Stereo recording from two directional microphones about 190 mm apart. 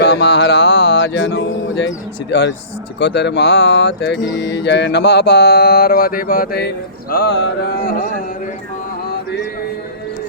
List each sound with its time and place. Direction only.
0.0 s mantra: 65° left (ahead or behind)
3.0 s speech: 65° left (ahead or behind); by 8.1 s 50° left (ahead or behind)